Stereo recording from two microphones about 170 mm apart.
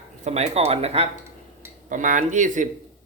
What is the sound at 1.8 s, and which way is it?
Speech, 50° right (ahead or behind).